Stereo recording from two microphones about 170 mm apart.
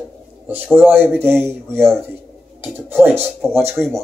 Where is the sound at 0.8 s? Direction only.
10° right (ahead or behind).